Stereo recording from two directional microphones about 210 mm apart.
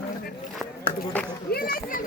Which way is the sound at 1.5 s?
45° left (ahead or behind).